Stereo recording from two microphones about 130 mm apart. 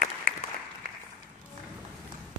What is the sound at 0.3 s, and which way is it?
Applause, 90° right.